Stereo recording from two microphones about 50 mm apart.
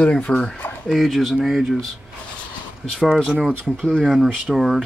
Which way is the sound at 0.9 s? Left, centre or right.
Centre.